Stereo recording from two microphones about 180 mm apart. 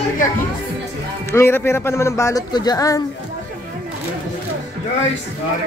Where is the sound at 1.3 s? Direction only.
15° left (ahead or behind).